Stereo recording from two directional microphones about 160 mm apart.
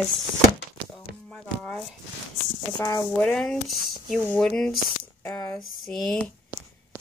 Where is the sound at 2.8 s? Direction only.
25° left (ahead or behind).